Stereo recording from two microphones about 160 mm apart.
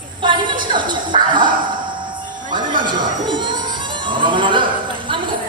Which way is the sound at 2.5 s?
30° right (ahead or behind).